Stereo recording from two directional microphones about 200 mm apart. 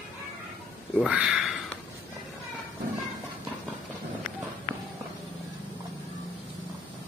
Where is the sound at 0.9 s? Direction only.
5° right (ahead or behind).